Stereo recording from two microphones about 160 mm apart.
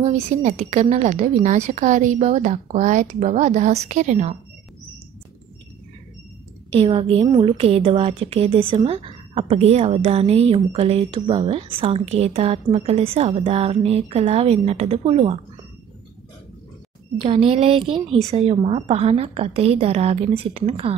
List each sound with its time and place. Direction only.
0.0 s a woman's voice: 45° right (ahead or behind)
6.7 s a woman's voice: 35° right (ahead or behind)
17.2 s a woman's voice: 35° right (ahead or behind)